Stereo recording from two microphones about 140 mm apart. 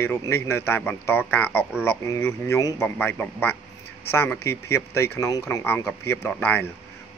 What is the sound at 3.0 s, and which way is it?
A man's voice, 15° left (ahead or behind).